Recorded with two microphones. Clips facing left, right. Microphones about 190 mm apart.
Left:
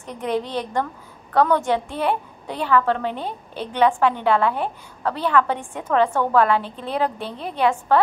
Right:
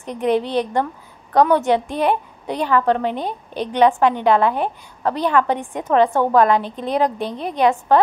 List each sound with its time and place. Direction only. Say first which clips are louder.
0.2 s a woman's voice: right 6 dB; 15° right (ahead or behind)